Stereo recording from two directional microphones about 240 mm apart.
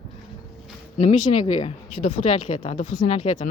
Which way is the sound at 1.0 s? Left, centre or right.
Left.